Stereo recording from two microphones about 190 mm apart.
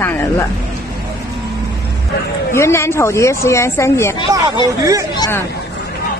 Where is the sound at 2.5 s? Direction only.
15° left (ahead or behind).